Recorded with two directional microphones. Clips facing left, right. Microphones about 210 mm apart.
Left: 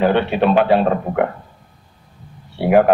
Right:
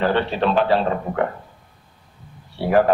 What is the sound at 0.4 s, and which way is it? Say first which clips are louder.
Speech: left 5 dB; 10° left (ahead or behind).